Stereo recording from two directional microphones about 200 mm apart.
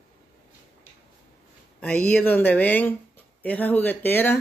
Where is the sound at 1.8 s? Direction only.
5° left (ahead or behind).